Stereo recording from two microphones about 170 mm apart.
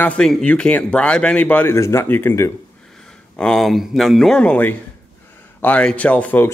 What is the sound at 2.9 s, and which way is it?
Speech, 5° left (ahead or behind).